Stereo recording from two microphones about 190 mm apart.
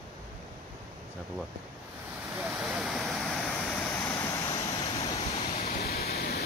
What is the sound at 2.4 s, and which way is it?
Waterfall, centre (ahead or behind).